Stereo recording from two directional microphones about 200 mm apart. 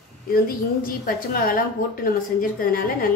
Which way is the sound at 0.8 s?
45° left (ahead or behind).